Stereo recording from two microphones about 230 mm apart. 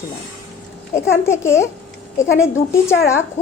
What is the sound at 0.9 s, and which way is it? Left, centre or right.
A woman's voice, centre.